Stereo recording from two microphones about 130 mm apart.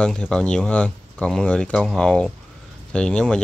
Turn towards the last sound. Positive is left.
turn(degrees=5)  # may be behind; listen again after turning